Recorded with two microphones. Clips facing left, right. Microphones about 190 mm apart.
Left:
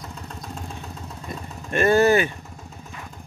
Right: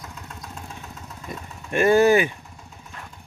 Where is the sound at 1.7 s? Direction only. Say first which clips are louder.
Right 1 dB; 10° right (ahead or behind).